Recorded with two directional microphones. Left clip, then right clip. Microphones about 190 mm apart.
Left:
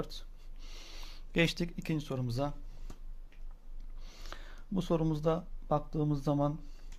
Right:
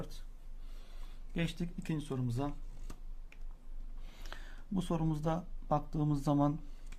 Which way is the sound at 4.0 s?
15° left (ahead or behind).